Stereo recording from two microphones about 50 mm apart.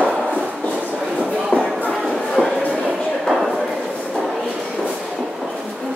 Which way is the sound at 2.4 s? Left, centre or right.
Centre.